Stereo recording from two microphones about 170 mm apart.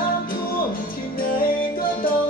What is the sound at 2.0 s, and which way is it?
Music, 55° left (ahead or behind).